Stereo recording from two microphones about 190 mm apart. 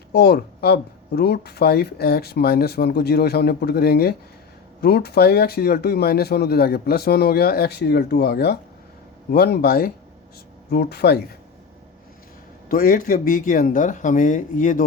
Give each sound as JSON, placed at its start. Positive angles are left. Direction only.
{"t": 0.1, "sound": "speech", "side_deg": 55}
{"t": 12.6, "sound": "speech", "side_deg": 50}